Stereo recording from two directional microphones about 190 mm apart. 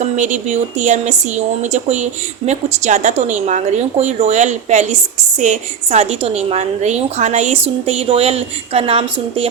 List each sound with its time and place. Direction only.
0.2 s a woman's voice: 40° right (ahead or behind)